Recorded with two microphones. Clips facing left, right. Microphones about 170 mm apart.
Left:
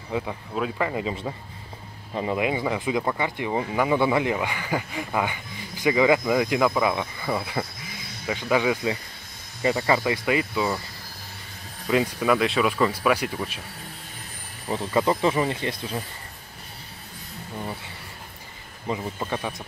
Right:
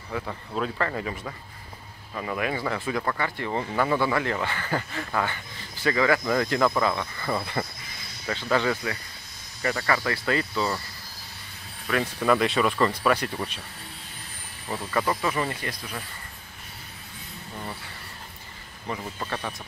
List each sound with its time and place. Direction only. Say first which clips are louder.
0.1 s speech: left 3 dB; 10° left (ahead or behind)
2.1 s speech: left 4 dB; 20° left (ahead or behind)
12.2 s speech: left 1 dB; centre (ahead or behind)
14.7 s speech: left 4 dB; 20° left (ahead or behind)
18.9 s speech: left 4 dB; 15° left (ahead or behind)